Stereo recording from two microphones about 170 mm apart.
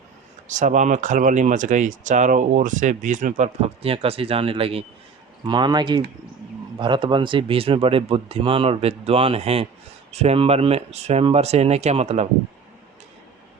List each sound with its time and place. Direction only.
0.4 s speech: 45° right (ahead or behind)